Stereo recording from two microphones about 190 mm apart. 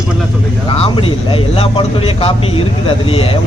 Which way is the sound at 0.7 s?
30° left (ahead or behind).